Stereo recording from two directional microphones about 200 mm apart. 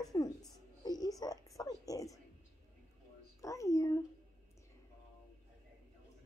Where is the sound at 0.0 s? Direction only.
20° left (ahead or behind).